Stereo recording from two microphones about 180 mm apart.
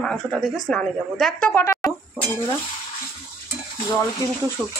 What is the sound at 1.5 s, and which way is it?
Speech, 15° left (ahead or behind).